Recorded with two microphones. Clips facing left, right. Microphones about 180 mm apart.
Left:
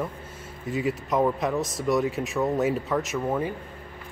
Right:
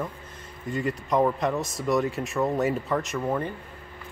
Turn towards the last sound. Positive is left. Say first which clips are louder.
# left 1 dB
turn(degrees=5)  # may be behind; listen again after turning